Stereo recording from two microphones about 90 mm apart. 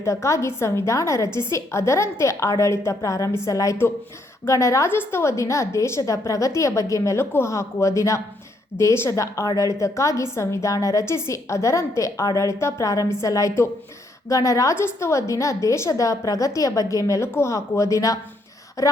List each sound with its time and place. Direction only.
0.0 s a woman's voice: 35° left (ahead or behind)